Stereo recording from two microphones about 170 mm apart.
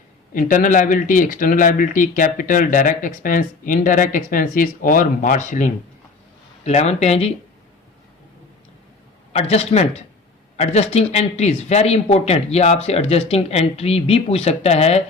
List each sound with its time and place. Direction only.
0.3 s speech: 50° left (ahead or behind)
9.3 s speech: 40° left (ahead or behind)